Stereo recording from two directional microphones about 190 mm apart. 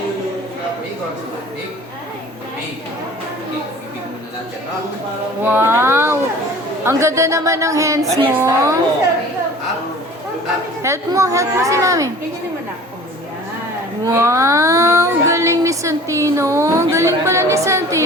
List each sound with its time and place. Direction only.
5.4 s a sound: 10° right (ahead or behind)
6.8 s child singing: 15° right (ahead or behind)
10.8 s child singing: 15° right (ahead or behind)
14.0 s child singing: 15° right (ahead or behind)